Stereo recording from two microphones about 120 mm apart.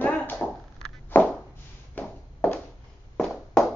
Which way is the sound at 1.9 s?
15° left (ahead or behind).